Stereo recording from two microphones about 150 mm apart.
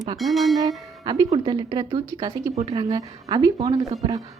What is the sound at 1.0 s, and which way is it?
Speech, 25° right (ahead or behind).